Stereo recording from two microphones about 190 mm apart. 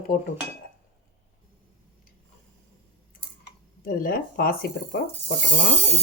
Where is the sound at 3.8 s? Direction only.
50° left (ahead or behind).